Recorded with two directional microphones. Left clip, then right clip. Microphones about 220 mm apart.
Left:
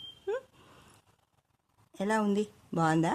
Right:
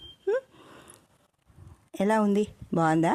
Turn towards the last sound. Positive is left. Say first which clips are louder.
# right 4 dB
turn(degrees=-35)  # may be behind; listen again after turning